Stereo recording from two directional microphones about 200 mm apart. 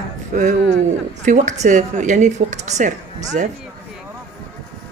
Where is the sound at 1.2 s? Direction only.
35° right (ahead or behind).